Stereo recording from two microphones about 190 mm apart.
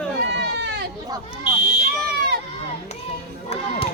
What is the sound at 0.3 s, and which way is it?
Sheep, 60° right (ahead or behind).